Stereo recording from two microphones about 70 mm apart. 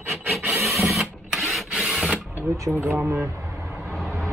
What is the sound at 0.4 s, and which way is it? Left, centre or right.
Rub, right.